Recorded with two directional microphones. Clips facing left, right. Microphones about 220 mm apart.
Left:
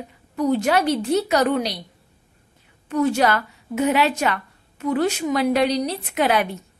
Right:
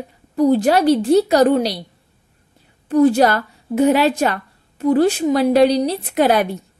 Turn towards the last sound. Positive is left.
turn(degrees=-40)  # may be behind; listen again after turning